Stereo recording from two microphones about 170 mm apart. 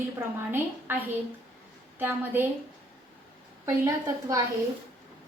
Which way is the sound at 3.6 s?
20° right (ahead or behind).